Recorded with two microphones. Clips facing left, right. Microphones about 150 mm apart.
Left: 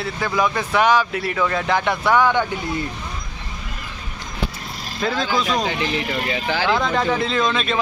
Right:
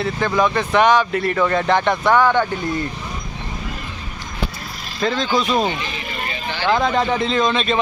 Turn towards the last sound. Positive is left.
turn(degrees=0)  # may be behind; listen again after turning